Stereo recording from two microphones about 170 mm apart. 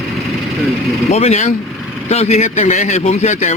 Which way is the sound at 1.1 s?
40° left (ahead or behind).